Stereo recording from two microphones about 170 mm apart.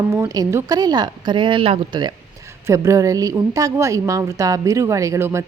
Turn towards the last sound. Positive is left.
turn(degrees=-15)  # may be behind; listen again after turning